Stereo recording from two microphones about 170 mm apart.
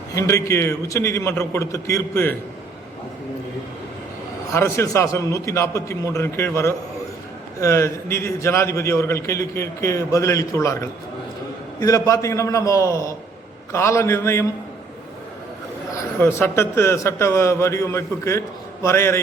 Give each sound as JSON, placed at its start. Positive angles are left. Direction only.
{"t": 0.1, "sound": "a man's voice", "side_deg": 20}
{"t": 4.5, "sound": "a man's voice", "side_deg": 15}
{"t": 16.2, "sound": "a man's voice", "side_deg": 15}